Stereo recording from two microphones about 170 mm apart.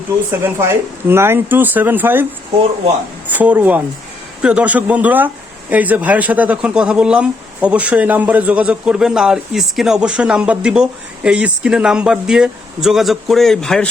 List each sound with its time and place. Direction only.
0.4 s speech: 15° right (ahead or behind)
3.3 s speech: 10° right (ahead or behind)